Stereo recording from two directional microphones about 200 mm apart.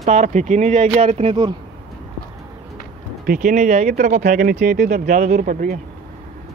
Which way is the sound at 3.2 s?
40° right (ahead or behind).